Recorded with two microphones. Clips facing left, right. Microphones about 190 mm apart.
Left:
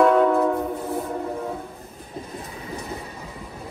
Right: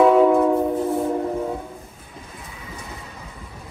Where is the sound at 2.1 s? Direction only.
35° left (ahead or behind).